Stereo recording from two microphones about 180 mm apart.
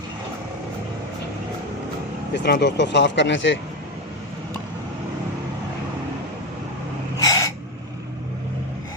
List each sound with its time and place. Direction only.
2.3 s speech: 70° left (ahead or behind); by 3.6 s 90° left
7.2 s gasp: 20° left (ahead or behind)